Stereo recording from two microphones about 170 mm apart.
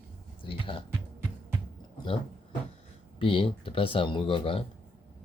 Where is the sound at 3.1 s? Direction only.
30° left (ahead or behind).